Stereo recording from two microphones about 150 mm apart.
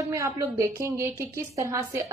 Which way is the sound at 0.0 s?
20° right (ahead or behind).